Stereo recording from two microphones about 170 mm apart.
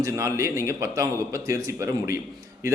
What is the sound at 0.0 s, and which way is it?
A man's voice, 20° right (ahead or behind).